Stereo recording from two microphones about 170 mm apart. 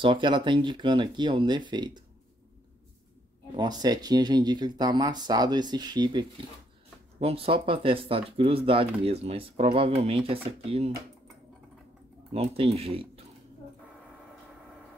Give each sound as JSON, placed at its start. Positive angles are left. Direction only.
{"t": 0.0, "sound": "speech", "side_deg": -30}
{"t": 3.5, "sound": "speech", "side_deg": -25}
{"t": 12.4, "sound": "speech", "side_deg": -35}